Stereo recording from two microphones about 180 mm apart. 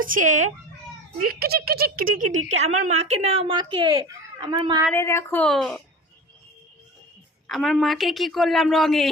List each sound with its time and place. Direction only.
0.0 s speech: 50° right (ahead or behind)
1.2 s a woman's voice: 60° right (ahead or behind); by 4.8 s 25° right (ahead or behind)
4.9 s a woman's voice: 15° left (ahead or behind)
7.4 s a woman's voice: centre (ahead or behind)